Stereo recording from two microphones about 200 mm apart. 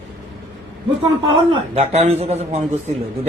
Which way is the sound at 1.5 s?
30° right (ahead or behind).